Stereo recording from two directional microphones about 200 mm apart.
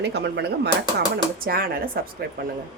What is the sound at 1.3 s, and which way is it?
Speech, 50° right (ahead or behind).